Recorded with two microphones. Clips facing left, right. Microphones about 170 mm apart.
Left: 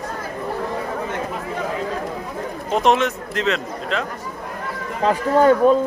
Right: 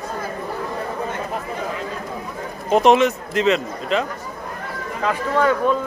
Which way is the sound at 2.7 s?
Centre (ahead or behind).